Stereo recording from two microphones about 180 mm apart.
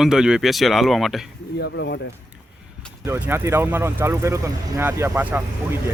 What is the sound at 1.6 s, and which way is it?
Speech, 80° left.